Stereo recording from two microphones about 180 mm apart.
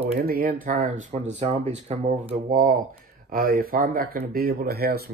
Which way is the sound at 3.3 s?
55° right (ahead or behind).